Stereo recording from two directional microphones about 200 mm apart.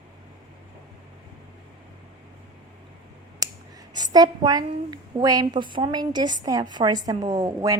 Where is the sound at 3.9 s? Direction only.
20° right (ahead or behind).